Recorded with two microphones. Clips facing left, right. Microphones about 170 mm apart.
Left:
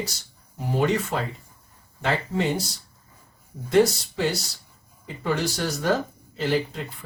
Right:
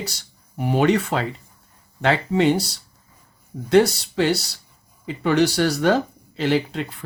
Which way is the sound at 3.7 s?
75° right (ahead or behind).